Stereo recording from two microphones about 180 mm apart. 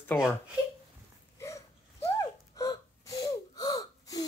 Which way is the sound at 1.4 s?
15° left (ahead or behind).